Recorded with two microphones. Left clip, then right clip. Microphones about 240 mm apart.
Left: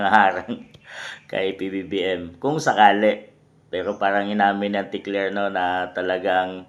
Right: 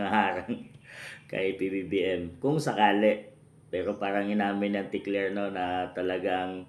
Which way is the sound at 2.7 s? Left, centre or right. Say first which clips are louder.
Left 10 dB; left.